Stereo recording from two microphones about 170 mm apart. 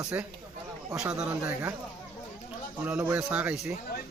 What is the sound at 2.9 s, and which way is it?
Speech, 10° right (ahead or behind).